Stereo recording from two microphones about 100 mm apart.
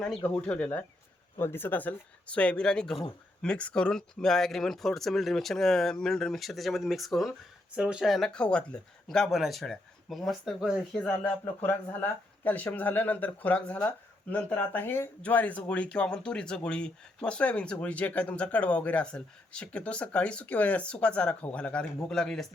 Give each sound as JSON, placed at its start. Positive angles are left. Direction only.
{"t": 0.2, "sound": "speech", "side_deg": 10}
{"t": 1.4, "sound": "speech", "side_deg": 20}
{"t": 10.9, "sound": "speech", "side_deg": 15}